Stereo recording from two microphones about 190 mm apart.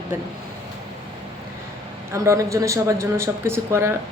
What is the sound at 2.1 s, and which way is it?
Speech, 15° right (ahead or behind).